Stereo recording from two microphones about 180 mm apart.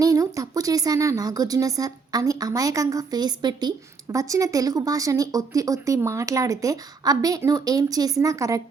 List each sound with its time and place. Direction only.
0.0 s speech: 20° right (ahead or behind)